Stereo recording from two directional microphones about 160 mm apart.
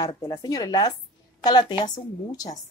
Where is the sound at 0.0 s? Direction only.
25° left (ahead or behind).